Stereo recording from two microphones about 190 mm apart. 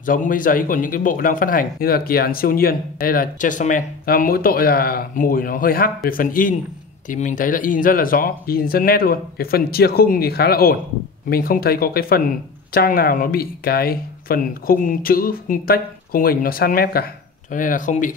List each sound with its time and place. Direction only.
0.0 s speech: 45° left (ahead or behind)